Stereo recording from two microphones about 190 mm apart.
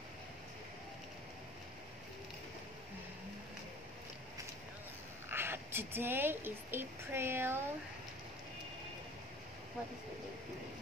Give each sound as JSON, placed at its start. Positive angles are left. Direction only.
{"t": 5.3, "sound": "a woman's voice", "side_deg": -10}